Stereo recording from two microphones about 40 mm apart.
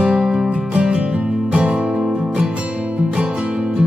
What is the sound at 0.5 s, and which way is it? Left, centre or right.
Music, right.